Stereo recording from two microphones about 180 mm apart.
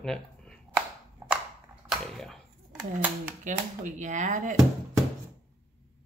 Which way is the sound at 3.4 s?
45° right (ahead or behind).